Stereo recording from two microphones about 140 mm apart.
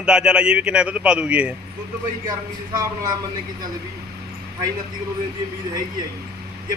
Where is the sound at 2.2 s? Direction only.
30° right (ahead or behind).